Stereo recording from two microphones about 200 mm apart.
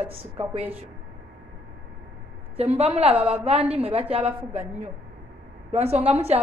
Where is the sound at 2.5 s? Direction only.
30° right (ahead or behind).